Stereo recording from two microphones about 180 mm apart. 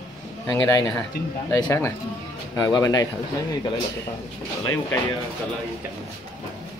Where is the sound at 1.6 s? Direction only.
15° left (ahead or behind).